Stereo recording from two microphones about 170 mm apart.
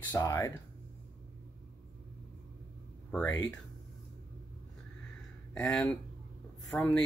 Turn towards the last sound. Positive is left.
turn(degrees=5)  # may be behind; listen again after turning